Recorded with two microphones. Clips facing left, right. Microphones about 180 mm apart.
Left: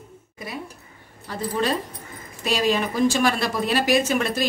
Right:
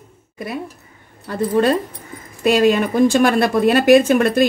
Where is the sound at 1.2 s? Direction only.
55° right (ahead or behind).